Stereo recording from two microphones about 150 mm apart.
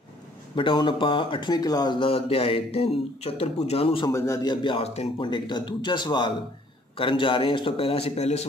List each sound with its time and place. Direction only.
0.6 s speech: 35° left (ahead or behind)
4.1 s speech: 25° left (ahead or behind); by 8.5 s 45° left (ahead or behind)